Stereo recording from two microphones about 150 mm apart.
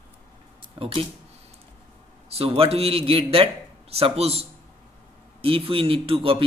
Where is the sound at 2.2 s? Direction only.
40° right (ahead or behind).